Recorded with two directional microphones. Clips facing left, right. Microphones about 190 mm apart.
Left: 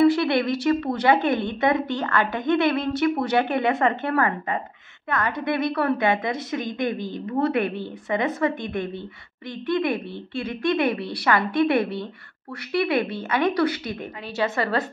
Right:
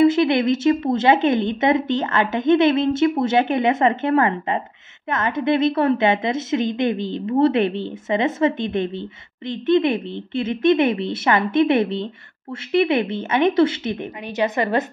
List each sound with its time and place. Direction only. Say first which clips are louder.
0.0 s speech: right 3 dB; 20° right (ahead or behind)